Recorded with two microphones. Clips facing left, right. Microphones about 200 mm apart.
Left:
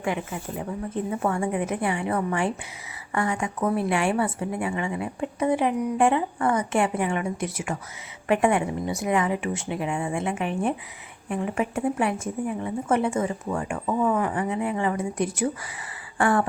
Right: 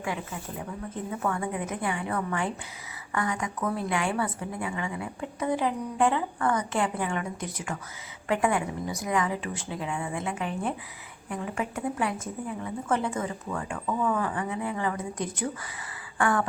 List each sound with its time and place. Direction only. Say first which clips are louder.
1.2 s a woman's voice: left 4 dB; 25° left (ahead or behind)
8.3 s a woman's voice: left 4 dB; 25° left (ahead or behind)
16.1 s a woman's voice: left 4 dB; 30° left (ahead or behind)